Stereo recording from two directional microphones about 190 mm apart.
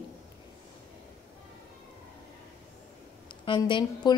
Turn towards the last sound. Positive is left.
turn(degrees=25)  # may be behind; listen again after turning